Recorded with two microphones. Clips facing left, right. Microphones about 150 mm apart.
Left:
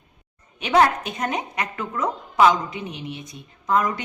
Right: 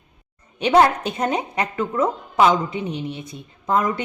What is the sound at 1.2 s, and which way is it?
A woman's voice, 30° right (ahead or behind).